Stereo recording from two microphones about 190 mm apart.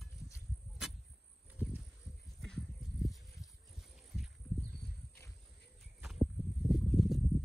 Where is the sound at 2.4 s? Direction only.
5° left (ahead or behind).